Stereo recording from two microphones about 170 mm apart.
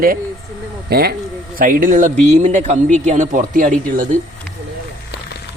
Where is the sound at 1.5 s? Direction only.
55° right (ahead or behind).